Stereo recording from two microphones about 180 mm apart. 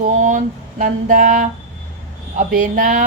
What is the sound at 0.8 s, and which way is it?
Speech, 45° right (ahead or behind).